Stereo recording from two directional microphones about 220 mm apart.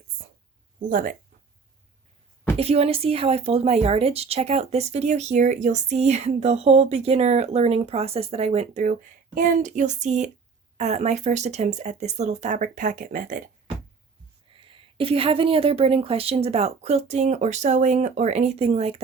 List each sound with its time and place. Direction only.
0.8 s speech: 40° right (ahead or behind)
2.6 s speech: 25° right (ahead or behind)
14.5 s speech: 25° right (ahead or behind)